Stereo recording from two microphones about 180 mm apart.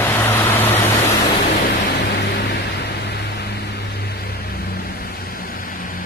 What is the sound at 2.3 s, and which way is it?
Vehicle, 65° left (ahead or behind).